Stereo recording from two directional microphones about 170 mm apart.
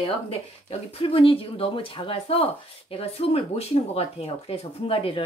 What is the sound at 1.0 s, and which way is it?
Speech, 30° left (ahead or behind).